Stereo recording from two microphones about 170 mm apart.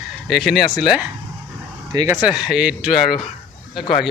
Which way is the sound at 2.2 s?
5° right (ahead or behind).